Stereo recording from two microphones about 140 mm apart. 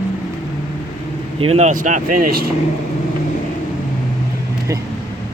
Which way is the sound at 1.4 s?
50° right (ahead or behind).